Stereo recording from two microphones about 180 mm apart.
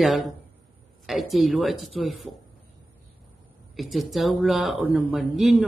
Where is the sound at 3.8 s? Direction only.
Centre (ahead or behind).